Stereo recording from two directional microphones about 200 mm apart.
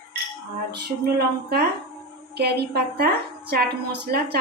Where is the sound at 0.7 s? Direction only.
50° right (ahead or behind).